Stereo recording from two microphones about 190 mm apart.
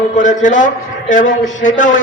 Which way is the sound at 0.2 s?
40° left (ahead or behind).